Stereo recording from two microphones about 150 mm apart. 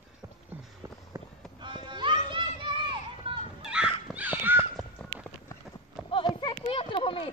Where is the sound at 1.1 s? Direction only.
30° right (ahead or behind).